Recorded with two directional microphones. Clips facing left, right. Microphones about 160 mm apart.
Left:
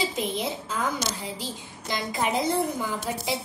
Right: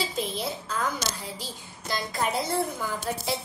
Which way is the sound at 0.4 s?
15° left (ahead or behind).